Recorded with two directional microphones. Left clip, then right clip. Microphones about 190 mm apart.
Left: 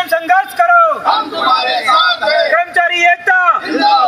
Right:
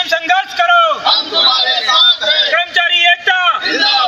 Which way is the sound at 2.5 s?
15° left (ahead or behind).